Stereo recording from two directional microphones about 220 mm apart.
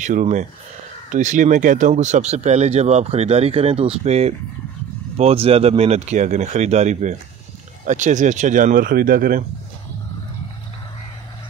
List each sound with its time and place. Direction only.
0.0 s speech: 35° right (ahead or behind)